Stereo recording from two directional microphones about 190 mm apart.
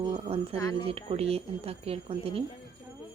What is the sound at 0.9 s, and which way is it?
A woman's voice, 30° right (ahead or behind).